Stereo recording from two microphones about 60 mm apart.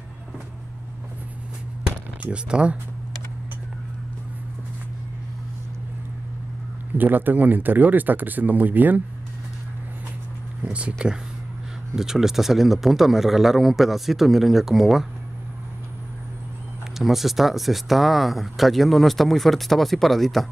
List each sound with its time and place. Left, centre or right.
2.2 s speech: centre
7.0 s speech: right
10.6 s speech: centre
11.9 s speech: centre
17.0 s speech: centre